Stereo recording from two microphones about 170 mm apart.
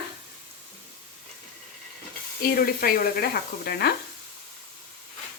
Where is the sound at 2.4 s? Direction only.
55° left (ahead or behind).